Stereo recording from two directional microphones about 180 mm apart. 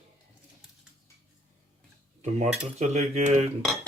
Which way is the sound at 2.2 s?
40° right (ahead or behind).